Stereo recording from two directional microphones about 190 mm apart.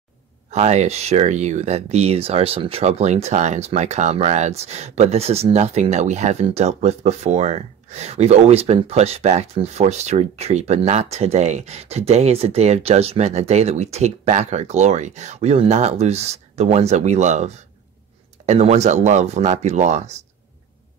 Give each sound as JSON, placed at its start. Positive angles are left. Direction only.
{"t": 0.5, "sound": "speech", "side_deg": -35}